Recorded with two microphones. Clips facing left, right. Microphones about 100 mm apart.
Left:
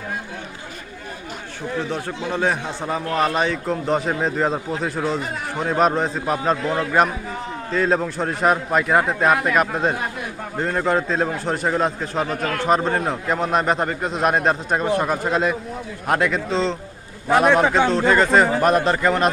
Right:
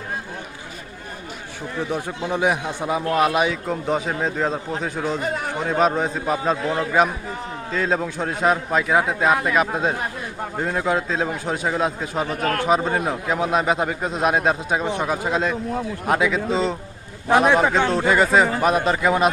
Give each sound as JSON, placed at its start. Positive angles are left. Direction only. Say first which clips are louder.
{"t": 1.8, "sound": "a man's voice", "louder": "right 3 dB", "side_deg": -15}
{"t": 12.4, "sound": "a man's voice", "louder": "right 2 dB", "side_deg": -45}
{"t": 12.6, "sound": "a man's voice", "louder": "left 2 dB", "side_deg": 0}